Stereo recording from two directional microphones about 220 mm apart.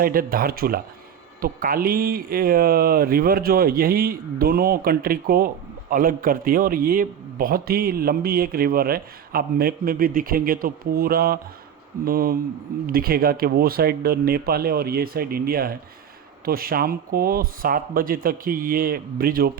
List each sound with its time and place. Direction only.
0.0 s a man's voice: 40° right (ahead or behind)